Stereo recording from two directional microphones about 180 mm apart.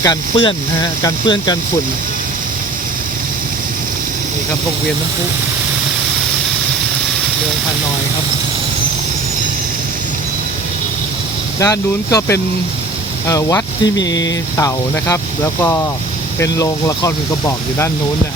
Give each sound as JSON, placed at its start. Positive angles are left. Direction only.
{"t": 0.0, "sound": "speech", "side_deg": 25}
{"t": 11.6, "sound": "speech", "side_deg": 20}
{"t": 16.4, "sound": "speech", "side_deg": 15}